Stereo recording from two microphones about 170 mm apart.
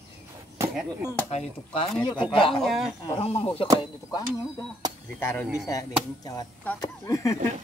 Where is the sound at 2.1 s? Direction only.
30° left (ahead or behind).